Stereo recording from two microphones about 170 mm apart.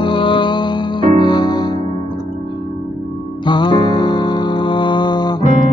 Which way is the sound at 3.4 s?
25° left (ahead or behind).